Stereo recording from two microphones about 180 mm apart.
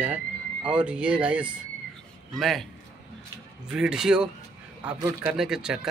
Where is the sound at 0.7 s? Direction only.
5° right (ahead or behind).